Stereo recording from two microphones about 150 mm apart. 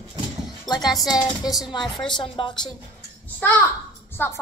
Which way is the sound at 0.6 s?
25° left (ahead or behind).